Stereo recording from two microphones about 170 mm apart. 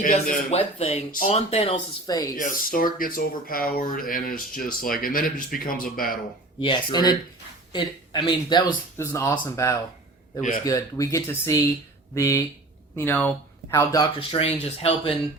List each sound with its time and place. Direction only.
0.0 s speech: 55° left (ahead or behind)
0.5 s speech: 35° left (ahead or behind)
2.0 s speech: 20° left (ahead or behind)
2.3 s speech: 55° left (ahead or behind)
6.6 s speech: 30° left (ahead or behind)